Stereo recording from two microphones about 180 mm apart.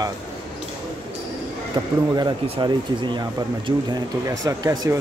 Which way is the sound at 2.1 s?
25° right (ahead or behind).